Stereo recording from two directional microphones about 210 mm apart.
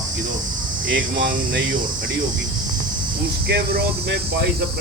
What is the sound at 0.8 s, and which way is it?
Speech, 60° right (ahead or behind).